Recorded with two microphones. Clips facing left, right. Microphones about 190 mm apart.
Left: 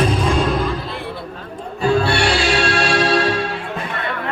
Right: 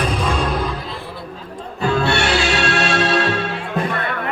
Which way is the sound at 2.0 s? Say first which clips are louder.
Left 1 dB; 25° right (ahead or behind).